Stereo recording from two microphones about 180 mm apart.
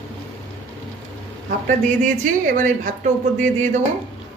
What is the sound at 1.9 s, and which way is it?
Speech, 45° right (ahead or behind).